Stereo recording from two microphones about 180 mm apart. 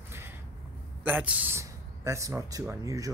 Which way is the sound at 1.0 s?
10° right (ahead or behind).